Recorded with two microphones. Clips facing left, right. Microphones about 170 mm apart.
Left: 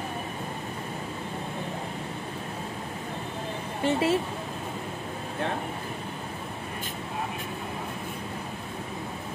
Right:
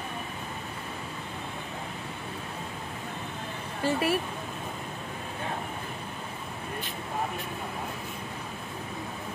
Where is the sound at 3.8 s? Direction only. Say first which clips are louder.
Left 2 dB; 25° left (ahead or behind).